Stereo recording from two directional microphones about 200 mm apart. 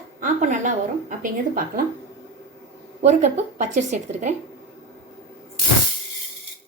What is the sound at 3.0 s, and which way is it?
Speech, 35° right (ahead or behind).